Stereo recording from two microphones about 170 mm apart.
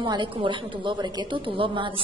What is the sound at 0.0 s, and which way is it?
A woman's voice, 30° right (ahead or behind).